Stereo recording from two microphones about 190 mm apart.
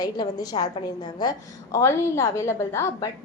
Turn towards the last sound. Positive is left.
turn(degrees=15)  # may be behind; listen again after turning